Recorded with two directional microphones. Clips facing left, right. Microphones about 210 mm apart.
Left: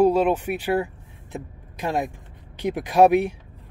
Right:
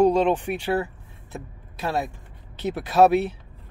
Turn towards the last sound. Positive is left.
turn(degrees=15)  # may be behind; listen again after turning